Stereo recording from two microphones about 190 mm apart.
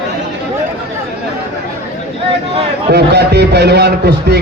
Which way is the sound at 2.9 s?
60° right (ahead or behind).